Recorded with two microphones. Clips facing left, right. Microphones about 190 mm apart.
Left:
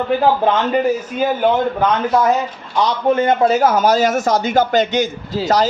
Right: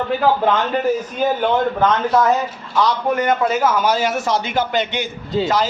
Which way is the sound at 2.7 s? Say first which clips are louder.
Left 2 dB; 25° left (ahead or behind).